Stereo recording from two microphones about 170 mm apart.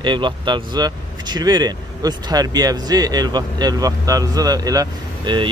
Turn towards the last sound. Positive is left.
turn(degrees=-25)  # may be behind; listen again after turning